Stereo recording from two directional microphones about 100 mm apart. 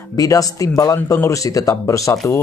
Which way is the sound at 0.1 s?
35° left (ahead or behind).